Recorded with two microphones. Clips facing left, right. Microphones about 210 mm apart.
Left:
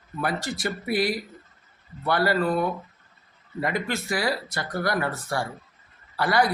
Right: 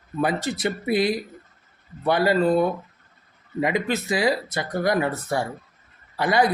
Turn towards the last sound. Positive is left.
turn(degrees=-20)  # may be behind; listen again after turning